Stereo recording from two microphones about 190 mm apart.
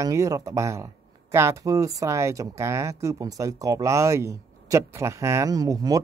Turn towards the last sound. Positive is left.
turn(degrees=-20)  # may be behind; listen again after turning